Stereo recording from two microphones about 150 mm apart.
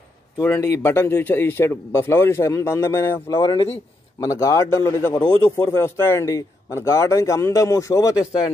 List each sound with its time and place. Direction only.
0.4 s a man's voice: 20° left (ahead or behind)
3.4 s speech: 35° left (ahead or behind)
4.2 s a man's voice: 20° left (ahead or behind)